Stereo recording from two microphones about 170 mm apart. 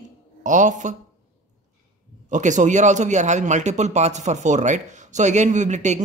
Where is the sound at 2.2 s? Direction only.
45° right (ahead or behind).